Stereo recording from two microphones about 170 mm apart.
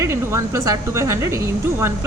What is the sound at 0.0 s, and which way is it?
Speech, 15° right (ahead or behind).